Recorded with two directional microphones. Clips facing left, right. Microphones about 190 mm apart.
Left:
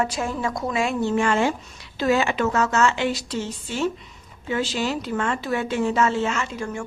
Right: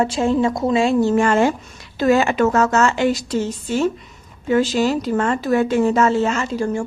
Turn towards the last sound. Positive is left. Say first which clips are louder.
# right 7 dB
turn(degrees=-35)  # may be behind; listen again after turning